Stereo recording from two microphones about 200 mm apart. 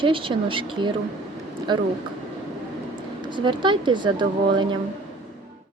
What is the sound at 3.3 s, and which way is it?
Speech, 25° right (ahead or behind).